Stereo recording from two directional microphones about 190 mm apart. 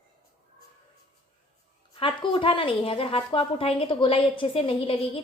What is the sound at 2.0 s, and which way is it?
A woman's voice, 25° left (ahead or behind).